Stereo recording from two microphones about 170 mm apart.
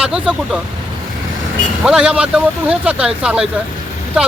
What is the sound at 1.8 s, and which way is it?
Speech, 5° right (ahead or behind).